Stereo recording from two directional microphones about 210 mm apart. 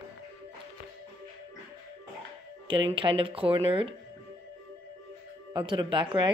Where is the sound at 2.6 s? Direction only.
25° right (ahead or behind).